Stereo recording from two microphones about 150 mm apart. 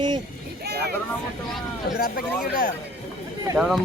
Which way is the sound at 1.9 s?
90° left.